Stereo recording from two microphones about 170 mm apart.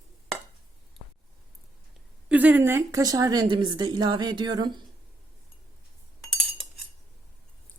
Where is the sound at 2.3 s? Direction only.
10° right (ahead or behind); by 4.7 s 25° right (ahead or behind).